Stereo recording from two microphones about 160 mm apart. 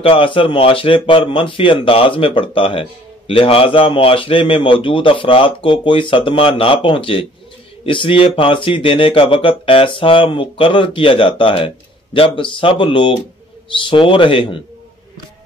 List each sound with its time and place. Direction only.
0.0 s speech: 35° left (ahead or behind)